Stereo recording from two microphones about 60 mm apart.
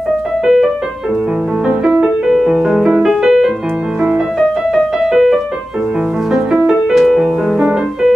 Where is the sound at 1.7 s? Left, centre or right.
Centre.